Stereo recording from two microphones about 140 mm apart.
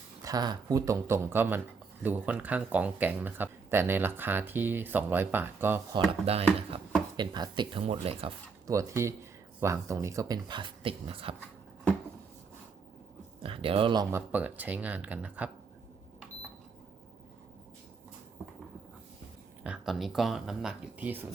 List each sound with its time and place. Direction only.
0.2 s speech: 25° right (ahead or behind)
6.2 s speech: 45° right (ahead or behind)
7.2 s speech: 30° right (ahead or behind)
8.6 s speech: 25° right (ahead or behind); by 11.3 s 40° right (ahead or behind)
13.4 s speech: 40° right (ahead or behind)
13.9 s speech: 25° right (ahead or behind)
14.2 s speech: 10° right (ahead or behind)
19.6 s speech: 5° right (ahead or behind)